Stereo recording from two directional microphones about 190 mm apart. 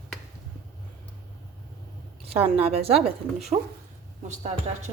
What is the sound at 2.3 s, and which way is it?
A woman's voice, 30° right (ahead or behind).